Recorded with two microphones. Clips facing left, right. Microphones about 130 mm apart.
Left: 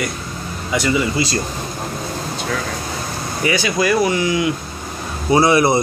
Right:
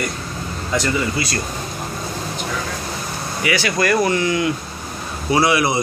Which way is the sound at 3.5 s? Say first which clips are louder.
Left 1 dB; 15° left (ahead or behind).